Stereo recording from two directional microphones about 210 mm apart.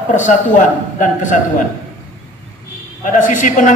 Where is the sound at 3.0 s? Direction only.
40° left (ahead or behind).